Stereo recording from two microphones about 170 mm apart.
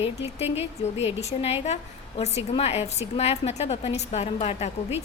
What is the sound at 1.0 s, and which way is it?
A woman's voice, 40° left (ahead or behind).